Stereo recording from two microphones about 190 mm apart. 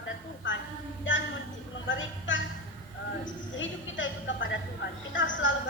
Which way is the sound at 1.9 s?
80° left.